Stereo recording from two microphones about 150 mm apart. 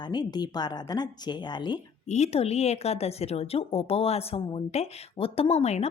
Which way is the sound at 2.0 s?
50° left (ahead or behind).